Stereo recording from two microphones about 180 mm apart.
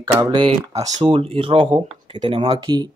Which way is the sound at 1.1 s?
30° right (ahead or behind).